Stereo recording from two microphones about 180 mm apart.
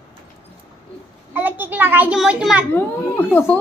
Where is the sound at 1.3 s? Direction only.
10° right (ahead or behind).